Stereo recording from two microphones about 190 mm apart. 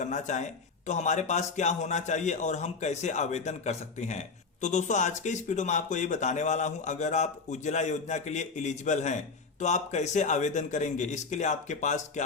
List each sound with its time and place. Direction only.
0.0 s speech: 40° left (ahead or behind)